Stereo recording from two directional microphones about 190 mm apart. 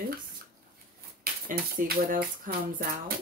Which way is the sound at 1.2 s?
50° right (ahead or behind).